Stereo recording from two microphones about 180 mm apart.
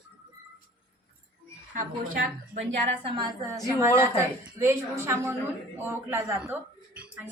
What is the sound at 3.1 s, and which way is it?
A woman's voice, 15° right (ahead or behind).